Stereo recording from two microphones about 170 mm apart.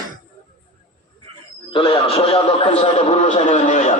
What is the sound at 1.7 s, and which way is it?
A man's voice, 30° left (ahead or behind).